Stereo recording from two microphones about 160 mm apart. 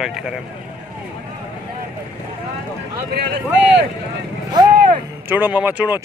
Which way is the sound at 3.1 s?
85° right.